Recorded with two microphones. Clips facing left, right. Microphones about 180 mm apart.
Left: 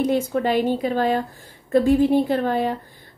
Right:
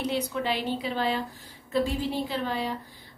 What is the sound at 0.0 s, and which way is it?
A woman's voice, 50° left (ahead or behind).